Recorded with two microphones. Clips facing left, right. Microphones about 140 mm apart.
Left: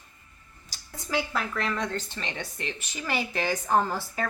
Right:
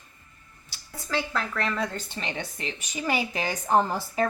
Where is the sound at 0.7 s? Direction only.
40° left (ahead or behind).